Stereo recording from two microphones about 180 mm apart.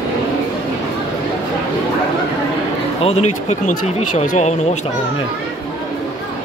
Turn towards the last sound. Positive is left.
turn(degrees=40)  # may be behind; listen again after turning